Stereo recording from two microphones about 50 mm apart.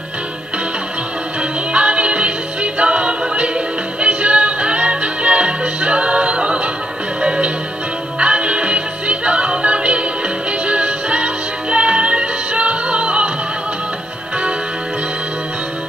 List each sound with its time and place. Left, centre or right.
1.7 s music: right